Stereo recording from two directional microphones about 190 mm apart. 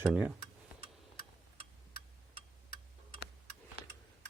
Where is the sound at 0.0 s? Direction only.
5° right (ahead or behind).